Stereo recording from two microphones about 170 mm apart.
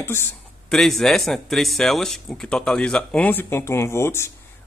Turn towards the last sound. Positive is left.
turn(degrees=15)  # may be behind; listen again after turning